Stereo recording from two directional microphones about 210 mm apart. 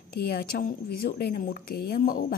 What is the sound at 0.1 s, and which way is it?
A woman's voice, 45° left (ahead or behind).